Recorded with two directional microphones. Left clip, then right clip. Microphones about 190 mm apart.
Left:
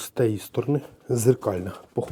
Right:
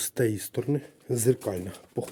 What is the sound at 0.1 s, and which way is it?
Speech, 10° right (ahead or behind).